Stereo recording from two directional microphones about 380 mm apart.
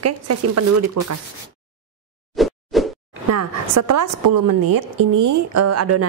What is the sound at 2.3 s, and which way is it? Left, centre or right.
Plop, centre.